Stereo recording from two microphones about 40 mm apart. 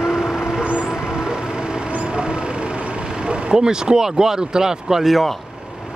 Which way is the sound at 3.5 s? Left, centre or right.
Centre.